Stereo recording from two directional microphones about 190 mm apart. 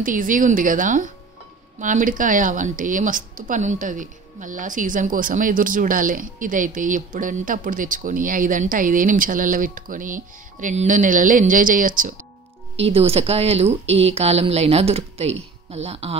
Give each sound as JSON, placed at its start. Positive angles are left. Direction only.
{"t": 0.0, "sound": "speech", "side_deg": -45}
{"t": 12.7, "sound": "speech", "side_deg": -30}